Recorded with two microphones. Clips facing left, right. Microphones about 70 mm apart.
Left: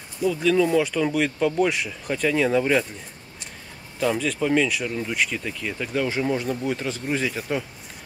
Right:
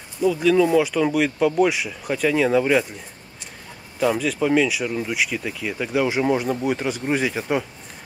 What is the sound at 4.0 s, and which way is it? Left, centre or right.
Speech, centre.